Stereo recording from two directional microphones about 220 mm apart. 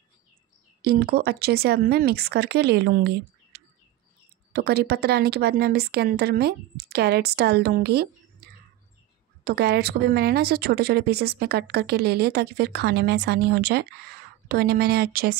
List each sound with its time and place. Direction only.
0.8 s a woman's voice: 45° right (ahead or behind)
4.5 s a woman's voice: 45° right (ahead or behind)
9.4 s a woman's voice: 45° right (ahead or behind)